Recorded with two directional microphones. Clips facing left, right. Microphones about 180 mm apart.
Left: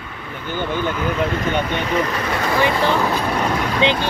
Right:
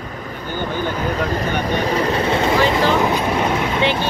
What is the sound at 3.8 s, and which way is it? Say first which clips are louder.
Speech: left 2 dB; 20° left (ahead or behind).